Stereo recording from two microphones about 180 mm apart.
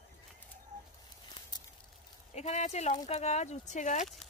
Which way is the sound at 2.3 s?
40° left (ahead or behind).